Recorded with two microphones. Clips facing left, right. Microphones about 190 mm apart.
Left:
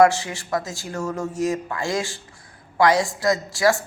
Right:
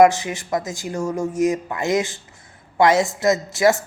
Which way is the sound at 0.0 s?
20° right (ahead or behind).